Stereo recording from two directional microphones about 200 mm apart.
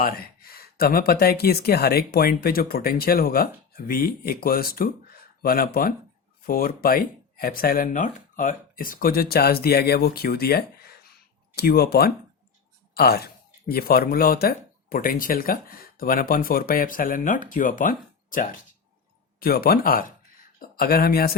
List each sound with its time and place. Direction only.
0.0 s speech: 50° left (ahead or behind)